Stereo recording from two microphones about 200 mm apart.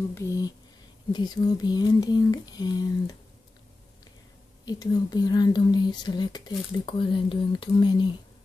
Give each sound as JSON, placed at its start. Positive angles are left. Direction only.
{"t": 0.1, "sound": "speech", "side_deg": 15}
{"t": 4.6, "sound": "speech", "side_deg": 20}